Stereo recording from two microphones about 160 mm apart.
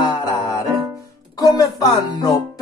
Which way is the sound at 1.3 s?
20° left (ahead or behind).